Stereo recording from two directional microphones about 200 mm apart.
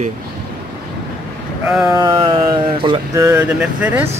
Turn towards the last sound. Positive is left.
turn(degrees=-10)  # may be behind; listen again after turning